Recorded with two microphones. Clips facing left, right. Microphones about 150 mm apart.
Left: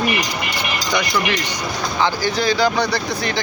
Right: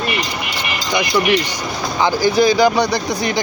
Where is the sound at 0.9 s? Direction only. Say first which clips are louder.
Right 5 dB; 15° right (ahead or behind).